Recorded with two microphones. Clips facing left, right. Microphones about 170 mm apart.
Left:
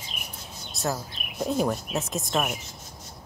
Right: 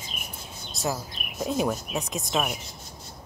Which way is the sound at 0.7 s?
Centre (ahead or behind).